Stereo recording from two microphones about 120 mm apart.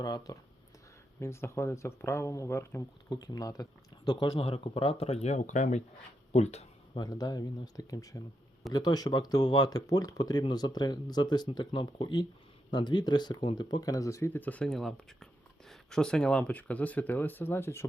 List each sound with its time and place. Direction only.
0.0 s speech: 30° left (ahead or behind)
1.2 s speech: 20° left (ahead or behind)
3.1 s speech: 35° left (ahead or behind); by 5.8 s 90° left
6.3 s speech: 60° left (ahead or behind)
6.9 s speech: 35° left (ahead or behind)